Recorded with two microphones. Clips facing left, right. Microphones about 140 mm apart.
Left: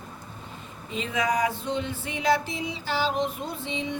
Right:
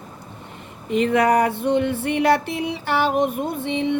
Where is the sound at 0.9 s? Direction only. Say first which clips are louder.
Right 10 dB; 65° right (ahead or behind).